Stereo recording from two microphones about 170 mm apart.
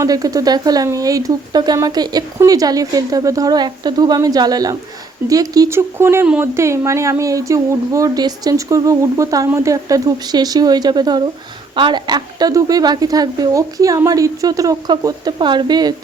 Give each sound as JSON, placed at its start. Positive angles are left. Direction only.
{"t": 0.0, "sound": "speech", "side_deg": -20}